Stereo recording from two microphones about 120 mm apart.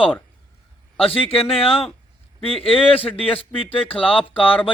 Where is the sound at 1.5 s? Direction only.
50° left (ahead or behind).